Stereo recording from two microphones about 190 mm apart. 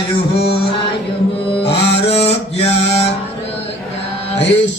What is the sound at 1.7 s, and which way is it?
Music, 30° left (ahead or behind).